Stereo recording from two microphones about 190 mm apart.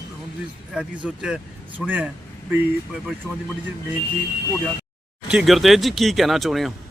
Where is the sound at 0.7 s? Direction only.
5° right (ahead or behind).